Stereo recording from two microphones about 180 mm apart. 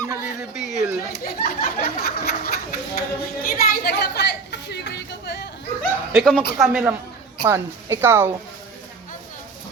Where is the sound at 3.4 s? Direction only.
55° left (ahead or behind).